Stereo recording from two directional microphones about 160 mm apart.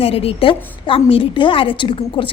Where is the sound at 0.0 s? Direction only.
40° left (ahead or behind).